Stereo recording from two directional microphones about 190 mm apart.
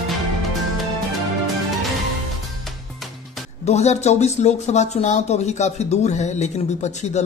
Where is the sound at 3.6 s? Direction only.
35° left (ahead or behind).